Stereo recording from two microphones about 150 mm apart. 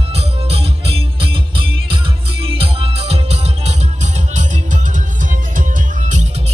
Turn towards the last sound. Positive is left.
turn(degrees=-55)  # may be behind; listen again after turning